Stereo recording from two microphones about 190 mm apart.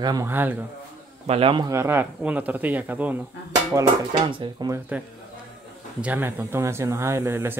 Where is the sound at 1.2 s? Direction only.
30° right (ahead or behind).